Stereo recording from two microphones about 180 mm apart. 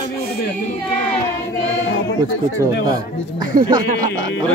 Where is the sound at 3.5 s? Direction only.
55° right (ahead or behind).